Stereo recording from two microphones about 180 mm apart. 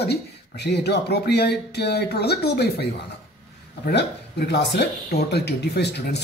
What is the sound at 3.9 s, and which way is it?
Speech, 65° left (ahead or behind).